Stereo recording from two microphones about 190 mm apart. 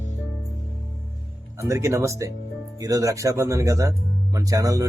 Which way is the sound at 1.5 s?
15° right (ahead or behind).